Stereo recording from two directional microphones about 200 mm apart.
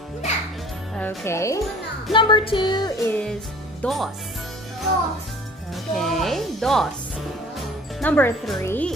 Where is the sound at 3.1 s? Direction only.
5° left (ahead or behind).